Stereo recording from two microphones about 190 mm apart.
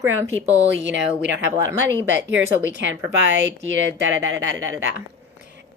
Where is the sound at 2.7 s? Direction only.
75° right (ahead or behind).